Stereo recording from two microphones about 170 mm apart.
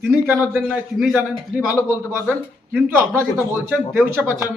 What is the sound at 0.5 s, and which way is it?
A man's voice, 5° right (ahead or behind).